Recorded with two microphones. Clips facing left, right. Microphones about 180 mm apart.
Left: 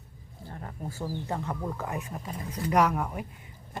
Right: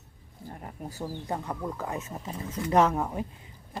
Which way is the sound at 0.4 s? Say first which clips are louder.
Even; 15° right (ahead or behind).